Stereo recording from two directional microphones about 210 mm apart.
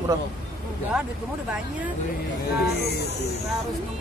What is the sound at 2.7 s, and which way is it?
Speech, 50° left (ahead or behind).